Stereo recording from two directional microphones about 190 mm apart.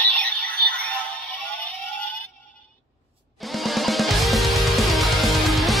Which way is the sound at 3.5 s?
Centre (ahead or behind).